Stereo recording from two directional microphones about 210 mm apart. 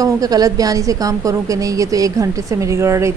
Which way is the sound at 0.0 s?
15° right (ahead or behind).